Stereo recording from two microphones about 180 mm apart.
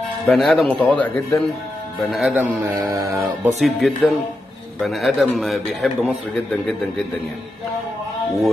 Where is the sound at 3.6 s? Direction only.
Centre (ahead or behind).